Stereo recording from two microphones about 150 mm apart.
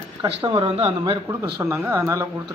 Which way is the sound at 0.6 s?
45° right (ahead or behind).